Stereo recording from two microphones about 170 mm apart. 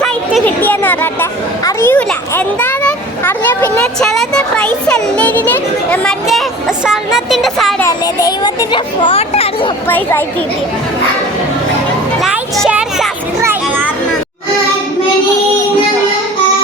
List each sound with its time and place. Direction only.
0.4 s a child's voice: 10° left (ahead or behind)
7.8 s a child's voice: 20° left (ahead or behind)
9.9 s a child's voice: 10° left (ahead or behind)
12.2 s music: centre (ahead or behind)
13.4 s children playing: 10° right (ahead or behind)